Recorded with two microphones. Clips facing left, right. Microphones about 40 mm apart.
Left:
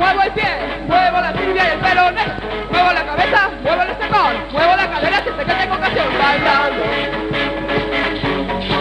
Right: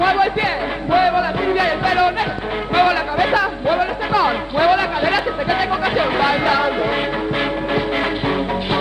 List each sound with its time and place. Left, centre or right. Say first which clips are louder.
0.1 s music: left 1 dB; left
1.1 s music: left 1 dB; left
2.7 s music: left 1 dB; left
4.9 s a sound: left 1 dB; left
5.5 s a sound: left 2 dB; left
6.1 s music: left 2 dB; left